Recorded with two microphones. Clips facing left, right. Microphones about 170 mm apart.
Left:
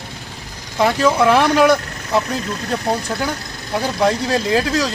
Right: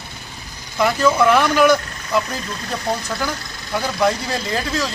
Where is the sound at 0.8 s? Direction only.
30° left (ahead or behind).